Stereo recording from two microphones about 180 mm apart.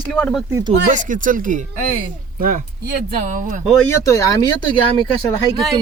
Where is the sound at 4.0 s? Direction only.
20° left (ahead or behind).